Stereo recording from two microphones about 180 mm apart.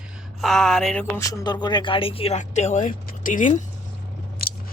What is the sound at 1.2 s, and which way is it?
Speech, 20° left (ahead or behind).